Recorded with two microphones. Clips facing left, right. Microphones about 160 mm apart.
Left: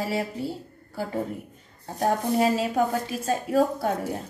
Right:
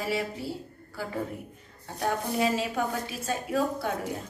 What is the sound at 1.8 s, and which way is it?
A woman's voice, 35° left (ahead or behind).